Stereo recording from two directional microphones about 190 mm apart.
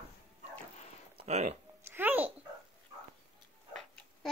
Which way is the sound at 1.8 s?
10° right (ahead or behind).